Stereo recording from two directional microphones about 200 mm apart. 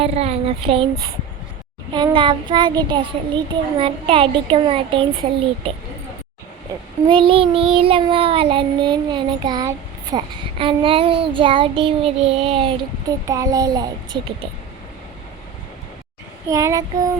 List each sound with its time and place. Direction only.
0.0 s child singing: 30° right (ahead or behind)
1.9 s child singing: 25° right (ahead or behind)
7.1 s child singing: 25° right (ahead or behind)
13.2 s a child's voice: 15° right (ahead or behind)
16.5 s a child's voice: 15° right (ahead or behind)